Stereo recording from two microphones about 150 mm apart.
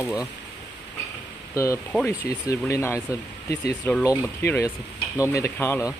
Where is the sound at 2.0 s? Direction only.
20° left (ahead or behind).